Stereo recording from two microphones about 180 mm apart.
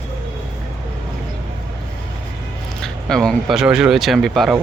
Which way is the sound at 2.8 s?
5° left (ahead or behind).